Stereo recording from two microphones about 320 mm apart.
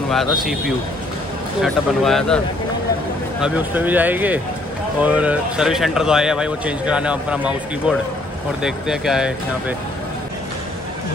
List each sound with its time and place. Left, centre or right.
0.1 s speech: centre
8.6 s speech: centre